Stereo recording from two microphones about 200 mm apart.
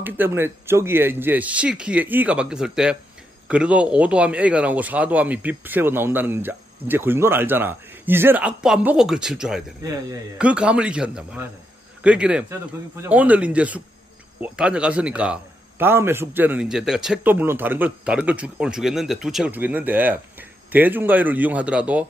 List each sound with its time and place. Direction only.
0.0 s a man's voice: 10° right (ahead or behind)
9.8 s a man's voice: 15° right (ahead or behind)
10.3 s a man's voice: 5° right (ahead or behind)